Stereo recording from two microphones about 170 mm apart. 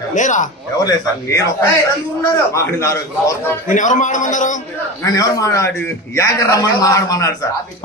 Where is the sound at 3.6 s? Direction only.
50° left (ahead or behind).